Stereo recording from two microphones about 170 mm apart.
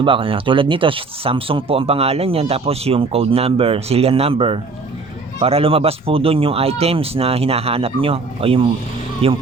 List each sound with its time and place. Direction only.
0.0 s speech: 30° right (ahead or behind)